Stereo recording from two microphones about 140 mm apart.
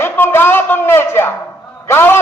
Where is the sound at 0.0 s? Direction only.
15° left (ahead or behind).